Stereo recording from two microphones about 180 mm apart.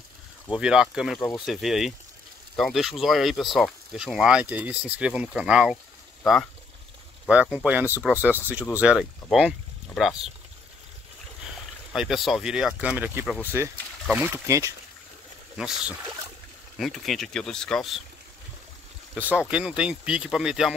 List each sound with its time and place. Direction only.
0.5 s speech: 5° right (ahead or behind)
11.9 s speech: 5° right (ahead or behind)
14.3 s speech: 15° right (ahead or behind)
15.5 s speech: 5° right (ahead or behind)
19.1 s speech: 10° right (ahead or behind)